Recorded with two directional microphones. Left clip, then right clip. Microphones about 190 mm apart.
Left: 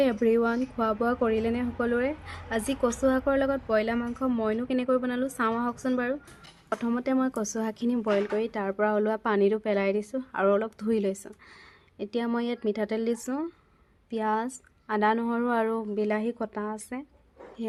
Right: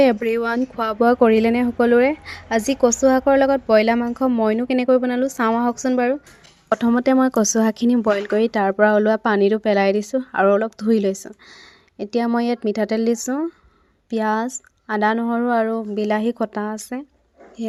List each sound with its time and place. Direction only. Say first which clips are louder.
0.0 s speech: right 7 dB; 40° right (ahead or behind); by 15.9 s 20° right (ahead or behind)
16.0 s speech: right 10 dB; 35° right (ahead or behind)